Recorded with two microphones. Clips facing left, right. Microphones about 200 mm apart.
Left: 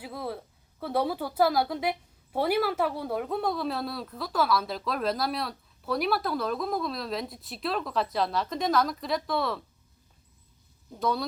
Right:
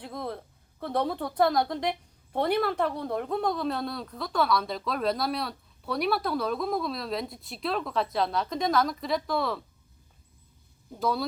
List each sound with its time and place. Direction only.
0.0 s a woman's voice: 5° left (ahead or behind)
11.0 s a woman's voice: centre (ahead or behind)